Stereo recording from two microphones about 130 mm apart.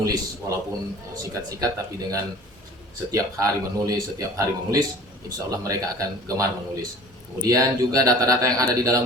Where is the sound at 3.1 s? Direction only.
25° right (ahead or behind).